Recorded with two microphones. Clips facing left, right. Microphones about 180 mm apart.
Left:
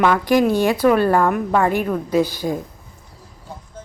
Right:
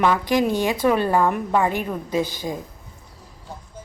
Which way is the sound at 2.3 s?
20° right (ahead or behind).